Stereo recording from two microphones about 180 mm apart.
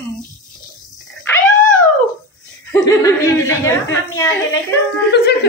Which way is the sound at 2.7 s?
15° left (ahead or behind).